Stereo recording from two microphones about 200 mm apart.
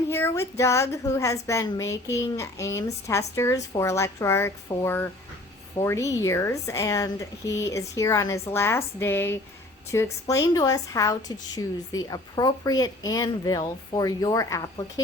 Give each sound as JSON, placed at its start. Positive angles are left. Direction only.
{"t": 0.1, "sound": "a woman's voice", "side_deg": 10}